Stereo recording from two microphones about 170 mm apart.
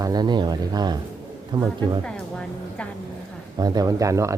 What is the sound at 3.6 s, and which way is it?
Speech, 20° right (ahead or behind).